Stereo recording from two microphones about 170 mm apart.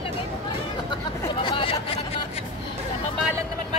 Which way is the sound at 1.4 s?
30° left (ahead or behind).